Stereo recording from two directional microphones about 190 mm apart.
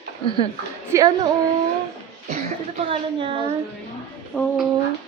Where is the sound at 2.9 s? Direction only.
30° right (ahead or behind).